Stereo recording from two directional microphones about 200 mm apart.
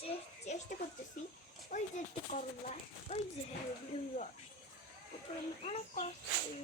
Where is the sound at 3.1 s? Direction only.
30° left (ahead or behind).